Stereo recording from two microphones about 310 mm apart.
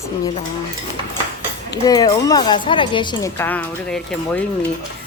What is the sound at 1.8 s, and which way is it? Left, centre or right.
A woman's voice, centre.